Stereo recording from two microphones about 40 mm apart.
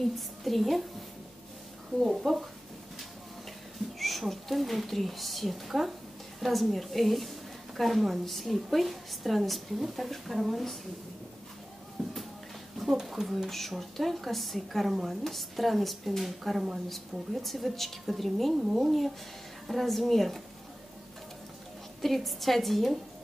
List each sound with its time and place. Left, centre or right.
0.0 s a woman's voice: centre
2.0 s a woman's voice: centre
4.0 s a woman's voice: centre
12.0 s a sound: centre
13.0 s a woman's voice: centre
18.6 s speech: centre
18.9 s a woman's voice: centre
22.0 s a woman's voice: centre